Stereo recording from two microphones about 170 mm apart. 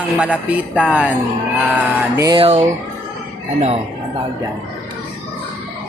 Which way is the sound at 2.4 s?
40° right (ahead or behind).